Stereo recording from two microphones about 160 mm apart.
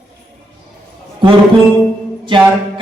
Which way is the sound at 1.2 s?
30° right (ahead or behind).